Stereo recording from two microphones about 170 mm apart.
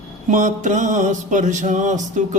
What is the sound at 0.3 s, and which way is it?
Mantra, 50° right (ahead or behind).